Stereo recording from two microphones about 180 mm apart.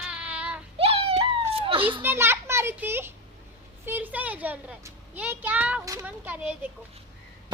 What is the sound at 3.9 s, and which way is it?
A child's voice, 10° right (ahead or behind).